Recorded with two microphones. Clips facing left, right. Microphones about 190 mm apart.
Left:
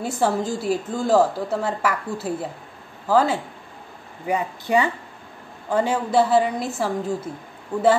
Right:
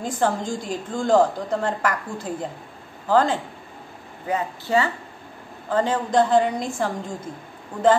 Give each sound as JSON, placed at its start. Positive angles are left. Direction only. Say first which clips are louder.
{"t": 0.0, "sound": "a woman's voice", "louder": "left 1 dB", "side_deg": 10}